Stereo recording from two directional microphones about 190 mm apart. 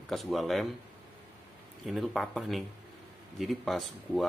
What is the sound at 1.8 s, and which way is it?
Speech, centre (ahead or behind).